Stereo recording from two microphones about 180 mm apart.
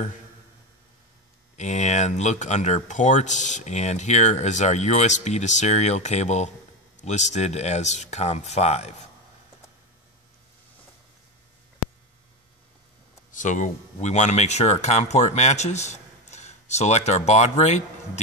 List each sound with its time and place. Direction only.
1.6 s speech: 40° left (ahead or behind)
13.3 s speech: 45° left (ahead or behind)